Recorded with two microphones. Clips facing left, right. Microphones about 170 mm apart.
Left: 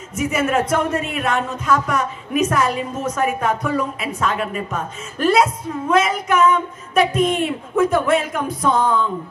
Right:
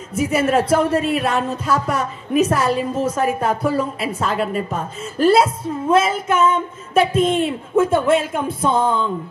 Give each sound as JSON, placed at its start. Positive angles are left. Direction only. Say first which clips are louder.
{"t": 0.1, "sound": "a woman's voice", "louder": "right 2 dB", "side_deg": -30}